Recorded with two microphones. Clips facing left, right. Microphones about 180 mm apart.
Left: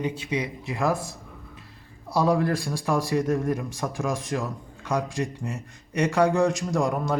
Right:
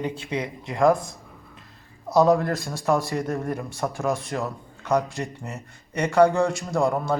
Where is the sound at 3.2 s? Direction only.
35° right (ahead or behind).